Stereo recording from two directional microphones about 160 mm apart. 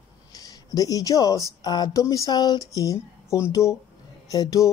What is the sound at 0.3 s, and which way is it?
Speech, 25° left (ahead or behind).